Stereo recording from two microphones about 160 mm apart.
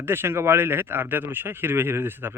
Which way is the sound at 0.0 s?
15° right (ahead or behind).